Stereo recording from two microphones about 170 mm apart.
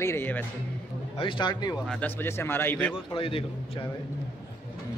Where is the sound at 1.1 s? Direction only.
30° left (ahead or behind).